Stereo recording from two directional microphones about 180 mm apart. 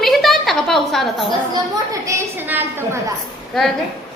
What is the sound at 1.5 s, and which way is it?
A woman's voice, 20° right (ahead or behind).